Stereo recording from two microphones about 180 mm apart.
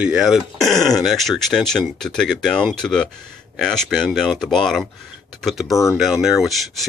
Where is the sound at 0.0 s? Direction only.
5° right (ahead or behind).